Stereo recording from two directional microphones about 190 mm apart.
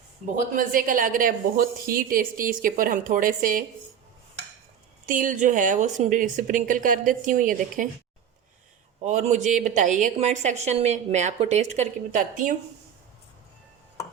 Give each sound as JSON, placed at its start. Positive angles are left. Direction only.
{"t": 0.3, "sound": "speech", "side_deg": -45}
{"t": 5.0, "sound": "speech", "side_deg": -45}
{"t": 9.0, "sound": "a woman's voice", "side_deg": -35}